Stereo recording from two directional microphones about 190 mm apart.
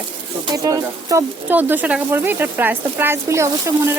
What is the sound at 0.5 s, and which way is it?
Speech, 15° right (ahead or behind).